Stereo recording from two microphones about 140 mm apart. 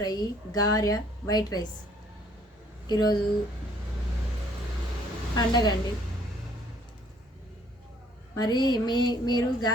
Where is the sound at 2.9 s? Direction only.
30° left (ahead or behind).